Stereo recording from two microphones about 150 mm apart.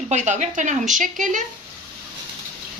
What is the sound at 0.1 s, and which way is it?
Speech, 55° right (ahead or behind).